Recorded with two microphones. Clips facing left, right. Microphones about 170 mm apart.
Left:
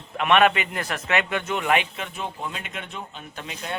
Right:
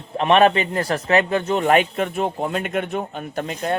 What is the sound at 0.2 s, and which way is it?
Speech, 35° right (ahead or behind).